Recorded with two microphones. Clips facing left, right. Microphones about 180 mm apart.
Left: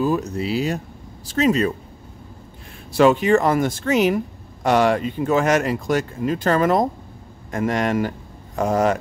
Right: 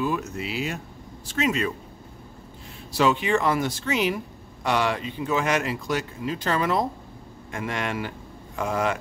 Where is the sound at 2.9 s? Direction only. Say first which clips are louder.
Left 7 dB; 50° left (ahead or behind).